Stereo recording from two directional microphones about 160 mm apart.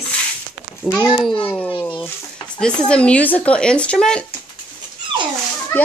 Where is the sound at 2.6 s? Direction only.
5° left (ahead or behind).